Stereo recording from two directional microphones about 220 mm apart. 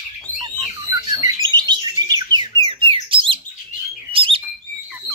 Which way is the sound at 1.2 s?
20° right (ahead or behind).